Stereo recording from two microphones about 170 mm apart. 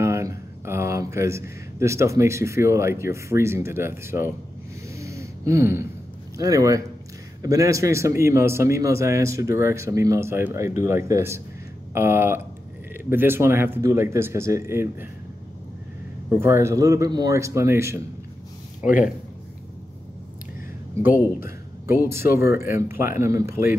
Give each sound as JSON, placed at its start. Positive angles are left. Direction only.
{"t": 0.0, "sound": "speech", "side_deg": -15}
{"t": 4.9, "sound": "gasp", "side_deg": -15}
{"t": 6.3, "sound": "a man's voice", "side_deg": -20}
{"t": 16.3, "sound": "a man's voice", "side_deg": -15}
{"t": 22.0, "sound": "a man's voice", "side_deg": -15}